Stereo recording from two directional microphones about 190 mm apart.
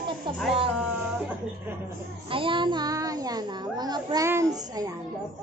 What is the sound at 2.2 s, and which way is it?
A child's voice, 25° right (ahead or behind).